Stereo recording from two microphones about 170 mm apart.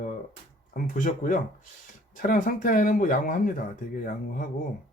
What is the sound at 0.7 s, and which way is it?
Speech, 50° left (ahead or behind).